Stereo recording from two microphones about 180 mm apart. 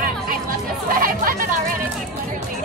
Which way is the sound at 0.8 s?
50° right (ahead or behind).